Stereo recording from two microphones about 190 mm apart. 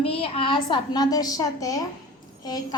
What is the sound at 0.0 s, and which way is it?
A woman's voice, 30° left (ahead or behind).